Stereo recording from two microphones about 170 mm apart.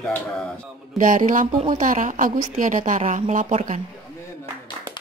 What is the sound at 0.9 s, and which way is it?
A woman's voice, 50° right (ahead or behind).